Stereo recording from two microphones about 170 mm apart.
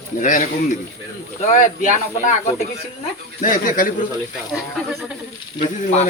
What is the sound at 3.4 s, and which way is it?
Speech, 55° left (ahead or behind).